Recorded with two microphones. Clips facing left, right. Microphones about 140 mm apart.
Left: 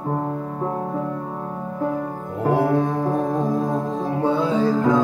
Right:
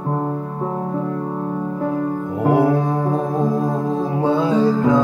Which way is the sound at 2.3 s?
15° right (ahead or behind).